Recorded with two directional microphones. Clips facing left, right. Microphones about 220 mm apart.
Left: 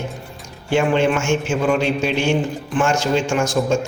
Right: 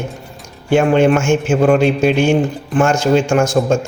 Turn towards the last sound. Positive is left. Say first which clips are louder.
# right 4 dB
turn(degrees=-50)  # may be behind; listen again after turning